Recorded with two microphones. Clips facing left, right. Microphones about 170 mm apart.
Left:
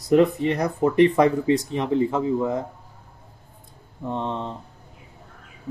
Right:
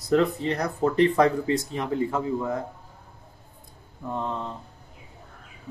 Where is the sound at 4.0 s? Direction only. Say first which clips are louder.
Left 3 dB; 25° left (ahead or behind).